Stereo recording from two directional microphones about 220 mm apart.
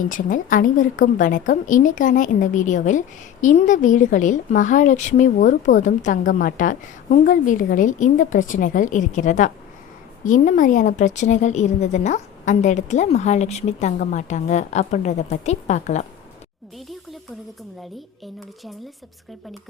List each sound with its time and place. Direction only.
0.0 s a woman's voice: 35° left (ahead or behind)